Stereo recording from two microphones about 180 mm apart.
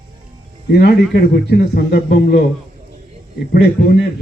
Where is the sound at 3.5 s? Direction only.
65° left (ahead or behind).